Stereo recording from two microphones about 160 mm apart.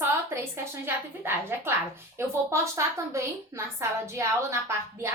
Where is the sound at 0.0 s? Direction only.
15° right (ahead or behind).